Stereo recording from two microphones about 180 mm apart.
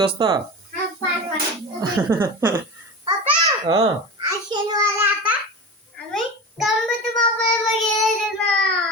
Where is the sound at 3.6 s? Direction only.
20° right (ahead or behind).